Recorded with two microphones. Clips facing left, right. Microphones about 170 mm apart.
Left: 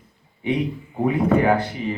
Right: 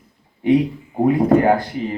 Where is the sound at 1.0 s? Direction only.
45° right (ahead or behind).